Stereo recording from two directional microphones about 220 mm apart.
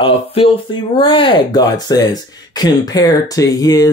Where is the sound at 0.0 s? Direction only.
25° left (ahead or behind).